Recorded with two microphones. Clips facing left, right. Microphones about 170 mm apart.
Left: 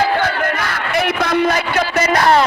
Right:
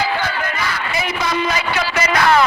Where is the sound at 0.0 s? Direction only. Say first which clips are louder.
Left 4 dB; 50° left (ahead or behind).